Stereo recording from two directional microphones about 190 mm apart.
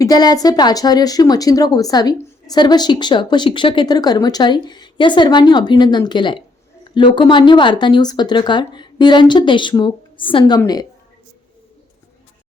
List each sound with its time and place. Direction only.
0.0 s speech: 20° left (ahead or behind)